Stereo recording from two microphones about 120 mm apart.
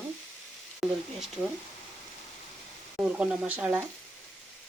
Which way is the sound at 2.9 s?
10° right (ahead or behind).